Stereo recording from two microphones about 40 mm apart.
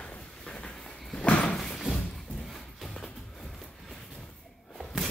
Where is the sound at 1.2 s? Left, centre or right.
Left.